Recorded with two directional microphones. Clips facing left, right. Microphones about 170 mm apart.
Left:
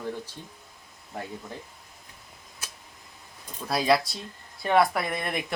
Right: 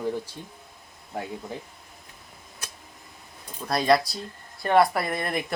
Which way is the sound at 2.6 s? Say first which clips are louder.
Right 2 dB; 5° left (ahead or behind).